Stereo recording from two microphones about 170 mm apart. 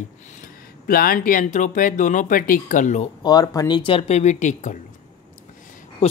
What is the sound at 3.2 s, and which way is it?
Speech, 20° left (ahead or behind).